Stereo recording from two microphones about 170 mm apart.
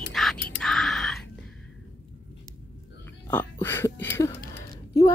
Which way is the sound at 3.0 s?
15° left (ahead or behind).